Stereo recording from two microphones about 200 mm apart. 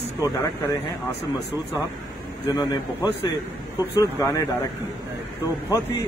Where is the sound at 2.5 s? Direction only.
20° left (ahead or behind).